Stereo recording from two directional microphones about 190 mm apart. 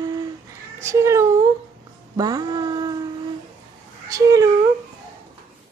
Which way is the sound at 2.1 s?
20° right (ahead or behind).